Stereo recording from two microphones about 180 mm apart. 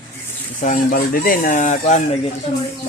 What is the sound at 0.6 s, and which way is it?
Speech, 50° left (ahead or behind).